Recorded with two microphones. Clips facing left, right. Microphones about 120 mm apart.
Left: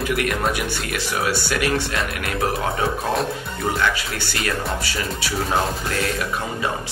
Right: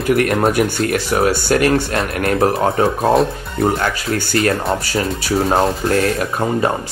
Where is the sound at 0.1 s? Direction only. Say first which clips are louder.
Right 10 dB; 40° right (ahead or behind).